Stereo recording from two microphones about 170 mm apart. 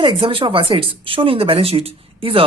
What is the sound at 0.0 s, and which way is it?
Speech, 30° right (ahead or behind).